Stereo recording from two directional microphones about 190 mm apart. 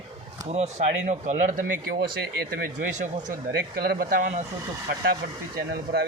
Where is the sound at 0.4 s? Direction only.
35° right (ahead or behind).